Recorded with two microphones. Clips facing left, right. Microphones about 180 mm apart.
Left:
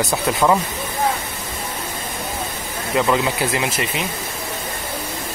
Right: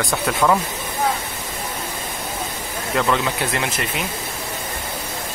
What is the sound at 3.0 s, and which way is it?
Speech, 5° left (ahead or behind).